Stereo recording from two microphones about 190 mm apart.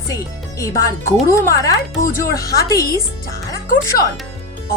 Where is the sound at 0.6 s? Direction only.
15° left (ahead or behind).